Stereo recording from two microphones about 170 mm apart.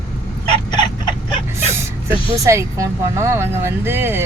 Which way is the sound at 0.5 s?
25° left (ahead or behind).